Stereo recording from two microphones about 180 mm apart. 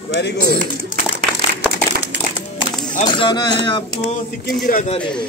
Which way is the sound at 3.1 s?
25° left (ahead or behind).